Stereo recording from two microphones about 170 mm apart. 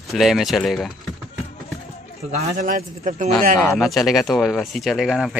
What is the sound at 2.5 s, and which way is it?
Speech, 55° right (ahead or behind).